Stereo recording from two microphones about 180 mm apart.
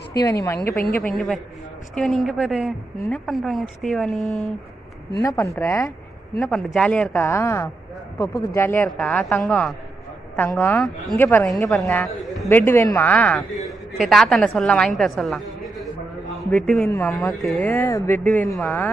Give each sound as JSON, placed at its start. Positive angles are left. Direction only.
{"t": 0.1, "sound": "a woman's voice", "side_deg": 20}
{"t": 1.1, "sound": "a woman's voice", "side_deg": 0}
{"t": 5.2, "sound": "a woman's voice", "side_deg": 15}
{"t": 16.4, "sound": "a man's voice", "side_deg": 5}
{"t": 16.8, "sound": "speech", "side_deg": 15}
{"t": 17.1, "sound": "speech", "side_deg": 0}